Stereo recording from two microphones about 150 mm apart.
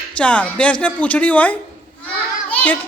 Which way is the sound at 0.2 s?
10° left (ahead or behind).